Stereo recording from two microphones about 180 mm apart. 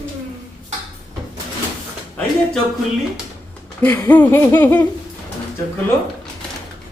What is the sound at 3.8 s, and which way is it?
Laughter, 10° left (ahead or behind).